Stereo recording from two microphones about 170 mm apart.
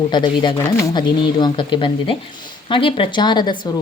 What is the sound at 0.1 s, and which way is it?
A woman's voice, 25° left (ahead or behind).